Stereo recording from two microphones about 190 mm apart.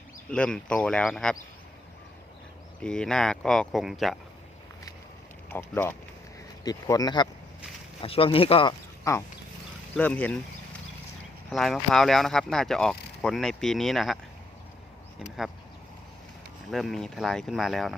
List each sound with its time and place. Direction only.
0.3 s speech: 5° left (ahead or behind)
2.8 s speech: 5° left (ahead or behind)
5.5 s speech: 10° left (ahead or behind); by 8.7 s 30° left (ahead or behind)
9.1 s speech: 15° left (ahead or behind)
9.9 s speech: 5° left (ahead or behind)
11.5 s speech: centre (ahead or behind)
15.4 s speech: centre (ahead or behind)
16.7 s speech: centre (ahead or behind)